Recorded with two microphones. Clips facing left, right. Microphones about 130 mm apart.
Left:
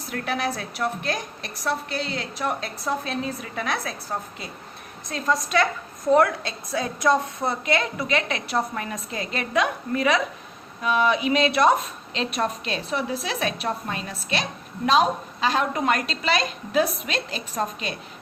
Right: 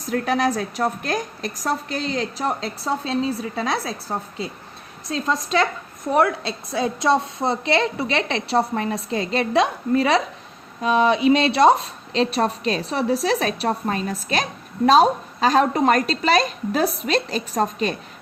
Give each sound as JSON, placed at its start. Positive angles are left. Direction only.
{"t": 0.1, "sound": "a woman's voice", "side_deg": -40}
{"t": 5.1, "sound": "a woman's voice", "side_deg": -25}